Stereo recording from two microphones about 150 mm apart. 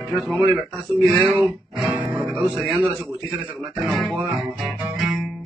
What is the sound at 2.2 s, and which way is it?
Speech, centre (ahead or behind).